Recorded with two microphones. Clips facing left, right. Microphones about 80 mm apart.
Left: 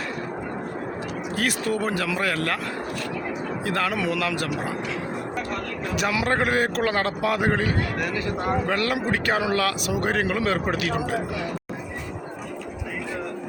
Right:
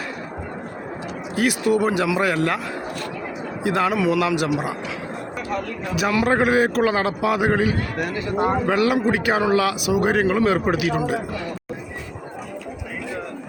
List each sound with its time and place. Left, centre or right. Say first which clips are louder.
1.4 s speech: right 7 dB; centre
3.6 s speech: right 6 dB; centre
5.9 s a man's voice: right 4 dB; centre
7.9 s speech: right 3 dB; right
8.6 s speech: right 5 dB; centre